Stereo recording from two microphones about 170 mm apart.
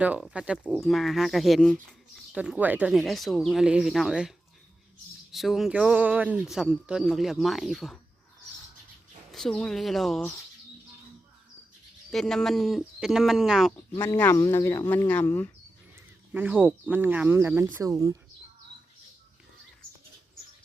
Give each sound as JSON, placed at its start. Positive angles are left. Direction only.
{"t": 0.0, "sound": "speech", "side_deg": -5}
{"t": 0.6, "sound": "speech", "side_deg": 5}
{"t": 9.3, "sound": "speech", "side_deg": 0}
{"t": 12.1, "sound": "speech", "side_deg": 5}
{"t": 13.7, "sound": "speech", "side_deg": 15}
{"t": 16.3, "sound": "speech", "side_deg": -10}